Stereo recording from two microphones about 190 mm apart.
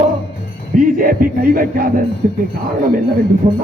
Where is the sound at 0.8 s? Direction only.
45° right (ahead or behind).